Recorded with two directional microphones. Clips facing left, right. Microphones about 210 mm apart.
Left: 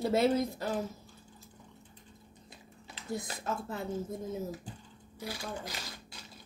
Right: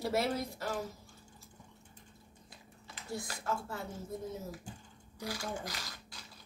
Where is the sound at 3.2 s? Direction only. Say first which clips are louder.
Right 2 dB; 20° left (ahead or behind).